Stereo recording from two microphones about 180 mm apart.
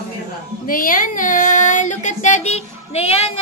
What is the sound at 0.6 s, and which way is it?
Female singing, 50° left (ahead or behind).